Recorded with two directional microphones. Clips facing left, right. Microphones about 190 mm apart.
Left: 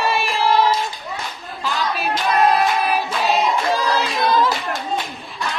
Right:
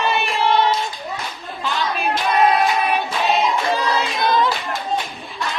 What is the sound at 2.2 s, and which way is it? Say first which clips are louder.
Child singing: even; centre (ahead or behind).